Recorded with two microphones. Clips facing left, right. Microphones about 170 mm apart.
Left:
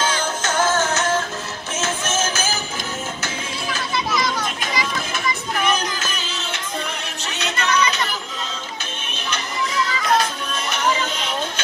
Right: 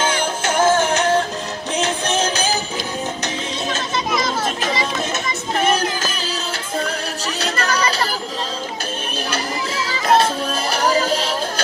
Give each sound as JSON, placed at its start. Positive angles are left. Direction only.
{"t": 0.0, "sound": "music", "side_deg": -10}
{"t": 7.3, "sound": "music", "side_deg": -35}
{"t": 9.3, "sound": "music", "side_deg": -30}